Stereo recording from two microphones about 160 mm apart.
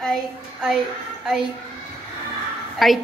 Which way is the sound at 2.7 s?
Centre (ahead or behind).